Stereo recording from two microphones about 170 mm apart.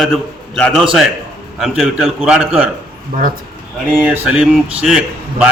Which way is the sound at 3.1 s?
55° right (ahead or behind).